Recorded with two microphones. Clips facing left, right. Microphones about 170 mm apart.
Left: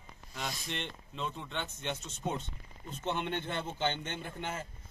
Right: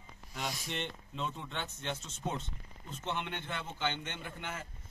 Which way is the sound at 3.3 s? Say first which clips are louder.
Left 5 dB; 30° left (ahead or behind).